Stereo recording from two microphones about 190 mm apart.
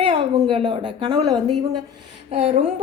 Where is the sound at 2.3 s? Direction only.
35° right (ahead or behind).